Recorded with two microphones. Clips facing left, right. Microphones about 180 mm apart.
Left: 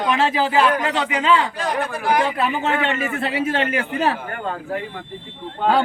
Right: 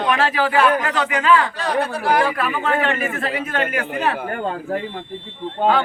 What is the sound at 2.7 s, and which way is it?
Speech, 45° right (ahead or behind).